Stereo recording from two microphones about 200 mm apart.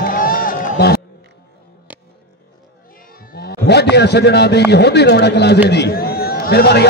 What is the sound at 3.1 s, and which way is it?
A man's voice, 45° left (ahead or behind).